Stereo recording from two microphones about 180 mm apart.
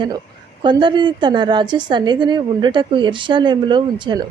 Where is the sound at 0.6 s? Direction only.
25° right (ahead or behind).